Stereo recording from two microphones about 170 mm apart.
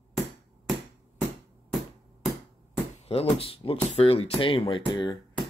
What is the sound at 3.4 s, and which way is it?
Speech, 35° left (ahead or behind).